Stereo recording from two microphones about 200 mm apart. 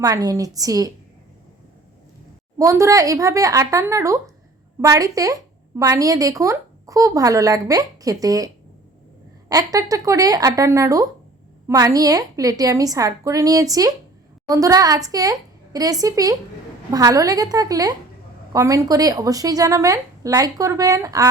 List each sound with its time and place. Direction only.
0.0 s speech: 20° right (ahead or behind)
2.6 s speech: 15° right (ahead or behind)
9.5 s speech: 15° right (ahead or behind)